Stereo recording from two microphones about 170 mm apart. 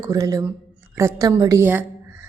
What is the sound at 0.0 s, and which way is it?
Speech, 20° right (ahead or behind).